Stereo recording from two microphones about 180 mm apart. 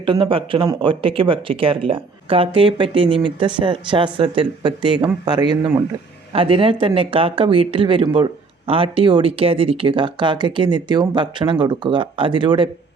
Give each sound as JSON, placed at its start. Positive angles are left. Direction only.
{"t": 0.0, "sound": "speech", "side_deg": -25}